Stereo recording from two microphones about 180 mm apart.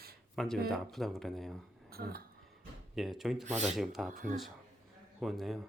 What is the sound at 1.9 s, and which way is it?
Speech, 55° right (ahead or behind).